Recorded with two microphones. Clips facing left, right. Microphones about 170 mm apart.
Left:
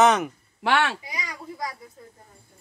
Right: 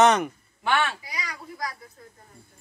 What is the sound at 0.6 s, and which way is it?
Speech, 75° left (ahead or behind).